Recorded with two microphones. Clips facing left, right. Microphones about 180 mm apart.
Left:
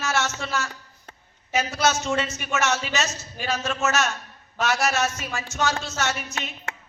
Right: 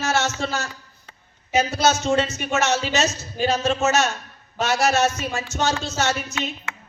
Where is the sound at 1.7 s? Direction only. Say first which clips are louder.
Right 3 dB; 30° right (ahead or behind).